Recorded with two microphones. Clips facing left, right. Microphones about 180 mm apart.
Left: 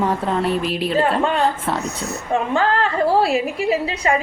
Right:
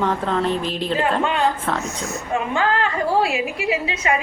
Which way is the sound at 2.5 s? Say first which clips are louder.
Left 2 dB; 40° left (ahead or behind).